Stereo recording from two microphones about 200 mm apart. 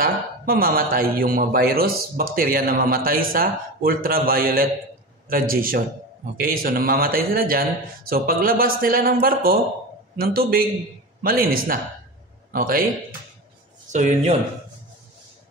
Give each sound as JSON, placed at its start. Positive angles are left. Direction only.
{"t": 0.0, "sound": "a man's voice", "side_deg": -45}
{"t": 13.8, "sound": "speech", "side_deg": -35}